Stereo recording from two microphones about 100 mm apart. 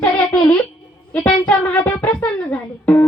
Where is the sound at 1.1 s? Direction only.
10° left (ahead or behind).